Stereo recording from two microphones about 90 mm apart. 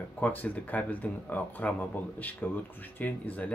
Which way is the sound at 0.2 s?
20° left (ahead or behind).